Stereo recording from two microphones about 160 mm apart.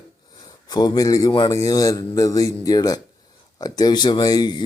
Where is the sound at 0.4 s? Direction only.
25° left (ahead or behind).